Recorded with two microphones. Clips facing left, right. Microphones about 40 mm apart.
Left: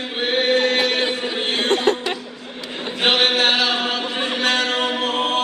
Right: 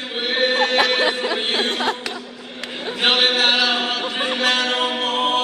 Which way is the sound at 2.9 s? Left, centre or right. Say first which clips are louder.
Even; centre.